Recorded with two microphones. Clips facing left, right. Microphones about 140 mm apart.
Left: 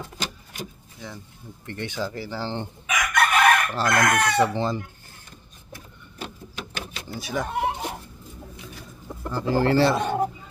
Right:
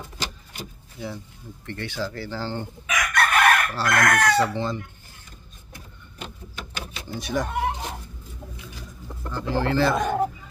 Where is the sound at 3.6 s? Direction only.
20° left (ahead or behind).